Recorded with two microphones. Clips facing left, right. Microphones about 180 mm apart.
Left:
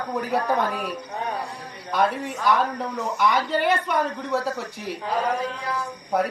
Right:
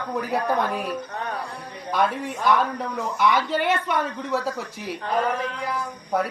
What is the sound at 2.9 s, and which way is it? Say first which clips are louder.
A woman's voice: right 1 dB; centre (ahead or behind).